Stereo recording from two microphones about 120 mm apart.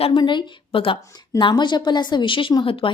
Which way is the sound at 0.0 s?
40° left (ahead or behind).